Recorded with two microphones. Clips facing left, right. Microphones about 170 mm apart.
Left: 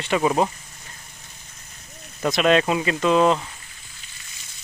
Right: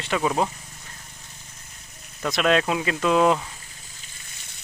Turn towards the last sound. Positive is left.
turn(degrees=-5)  # may be behind; listen again after turning